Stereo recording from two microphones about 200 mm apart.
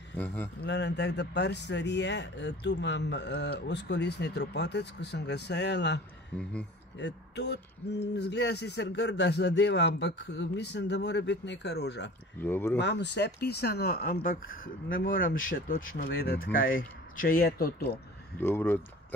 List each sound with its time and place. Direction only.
0.1 s a man's voice: 10° left (ahead or behind)
0.7 s speech: 60° left (ahead or behind)
7.0 s speech: 60° left (ahead or behind)
12.4 s speech: 10° left (ahead or behind)
12.7 s speech: 60° left (ahead or behind)
18.4 s speech: 10° left (ahead or behind)